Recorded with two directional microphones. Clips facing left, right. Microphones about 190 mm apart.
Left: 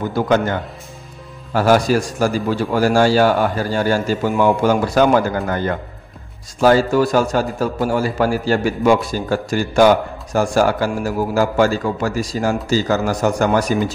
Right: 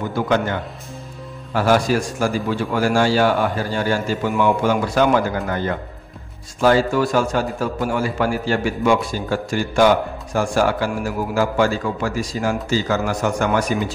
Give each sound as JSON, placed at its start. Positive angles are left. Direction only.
{"t": 0.1, "sound": "a man's voice", "side_deg": 40}